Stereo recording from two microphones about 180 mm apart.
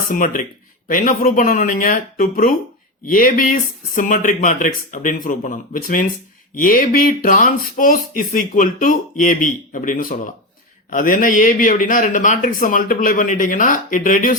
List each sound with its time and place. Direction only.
0.1 s speech: 45° left (ahead or behind)